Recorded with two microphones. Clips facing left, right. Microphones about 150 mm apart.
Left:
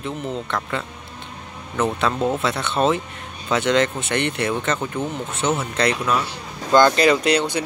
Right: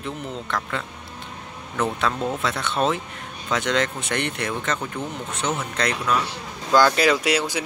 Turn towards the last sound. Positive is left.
turn(degrees=-5)  # may be behind; listen again after turning